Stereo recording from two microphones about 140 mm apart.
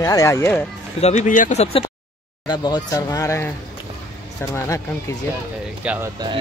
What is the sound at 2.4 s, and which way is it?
Speech, 30° left (ahead or behind).